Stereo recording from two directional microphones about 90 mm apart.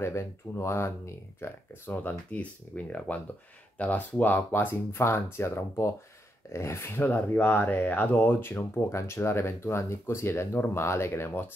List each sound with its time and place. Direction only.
0.0 s speech: 30° left (ahead or behind)